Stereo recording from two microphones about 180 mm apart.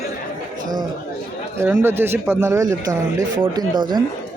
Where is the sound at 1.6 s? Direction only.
15° right (ahead or behind).